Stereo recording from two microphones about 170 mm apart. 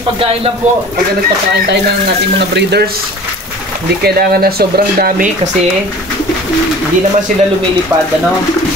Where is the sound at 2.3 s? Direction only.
80° right.